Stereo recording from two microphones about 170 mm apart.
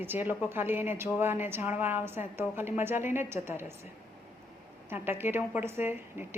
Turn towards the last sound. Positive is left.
turn(degrees=-15)  # may be behind; listen again after turning